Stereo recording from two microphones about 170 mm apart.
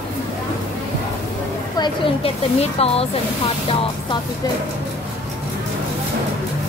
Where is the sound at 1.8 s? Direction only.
35° left (ahead or behind).